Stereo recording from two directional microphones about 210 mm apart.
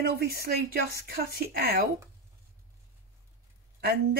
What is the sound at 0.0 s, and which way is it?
Speech, 45° right (ahead or behind).